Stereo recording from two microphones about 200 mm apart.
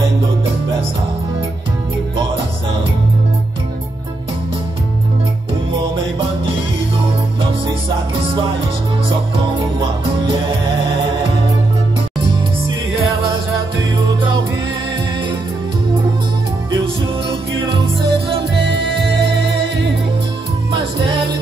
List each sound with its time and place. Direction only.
12.3 s music: 25° right (ahead or behind)
16.7 s music: 25° right (ahead or behind)